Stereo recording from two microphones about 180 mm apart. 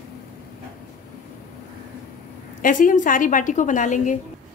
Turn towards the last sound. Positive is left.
turn(degrees=45)  # may be behind; listen again after turning